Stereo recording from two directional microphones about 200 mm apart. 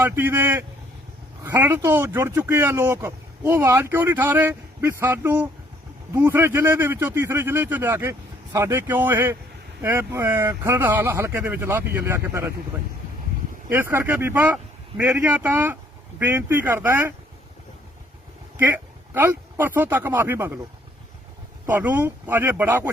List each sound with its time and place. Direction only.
0.0 s speech: 10° right (ahead or behind)
13.7 s speech: 10° right (ahead or behind)
18.5 s speech: 10° right (ahead or behind)
21.7 s speech: 10° right (ahead or behind)